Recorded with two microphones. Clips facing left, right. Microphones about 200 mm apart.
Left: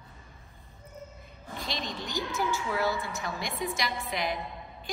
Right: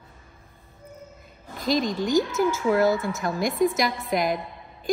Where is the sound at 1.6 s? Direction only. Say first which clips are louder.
Right 13 dB; 45° right (ahead or behind).